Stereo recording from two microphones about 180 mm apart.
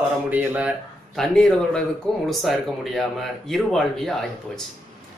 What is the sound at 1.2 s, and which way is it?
Speech, 5° left (ahead or behind).